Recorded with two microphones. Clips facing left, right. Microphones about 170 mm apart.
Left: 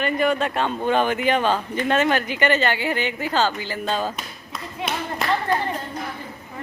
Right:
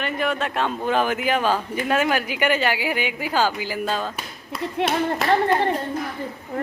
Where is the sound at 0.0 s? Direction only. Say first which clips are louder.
Left 3 dB; centre (ahead or behind).